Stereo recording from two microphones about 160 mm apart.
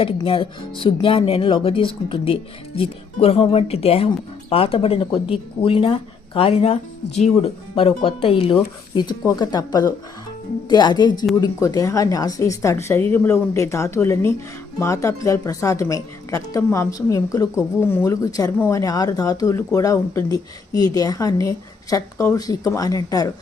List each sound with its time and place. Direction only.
0.0 s speech: 35° left (ahead or behind)